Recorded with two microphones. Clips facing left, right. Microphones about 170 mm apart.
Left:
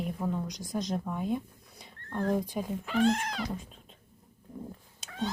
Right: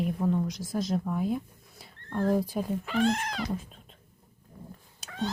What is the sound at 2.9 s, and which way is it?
Speech, 80° right.